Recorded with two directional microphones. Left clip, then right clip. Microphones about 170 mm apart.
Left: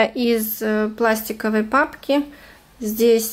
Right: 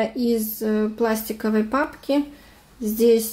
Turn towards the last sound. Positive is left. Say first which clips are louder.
# left 1 dB
turn(degrees=5)  # may be behind; listen again after turning